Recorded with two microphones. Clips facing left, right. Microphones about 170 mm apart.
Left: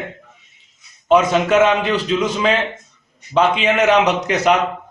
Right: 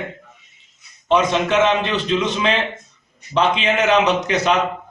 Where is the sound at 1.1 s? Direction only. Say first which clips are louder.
Left 3 dB; 5° left (ahead or behind).